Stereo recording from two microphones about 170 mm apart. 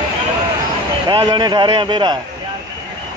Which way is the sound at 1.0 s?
25° right (ahead or behind).